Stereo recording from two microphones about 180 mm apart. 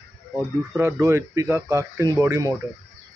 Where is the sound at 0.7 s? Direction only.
15° right (ahead or behind).